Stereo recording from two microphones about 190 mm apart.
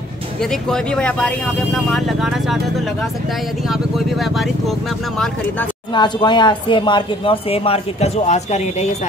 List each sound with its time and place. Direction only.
0.4 s speech: 5° left (ahead or behind)
3.6 s speech: centre (ahead or behind)
5.9 s speech: 25° left (ahead or behind)